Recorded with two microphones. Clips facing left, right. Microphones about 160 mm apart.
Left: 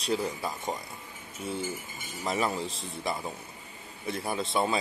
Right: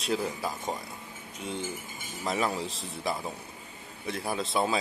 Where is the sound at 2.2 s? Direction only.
Centre (ahead or behind).